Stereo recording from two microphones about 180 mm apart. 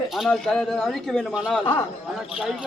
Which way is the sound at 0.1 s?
Centre (ahead or behind).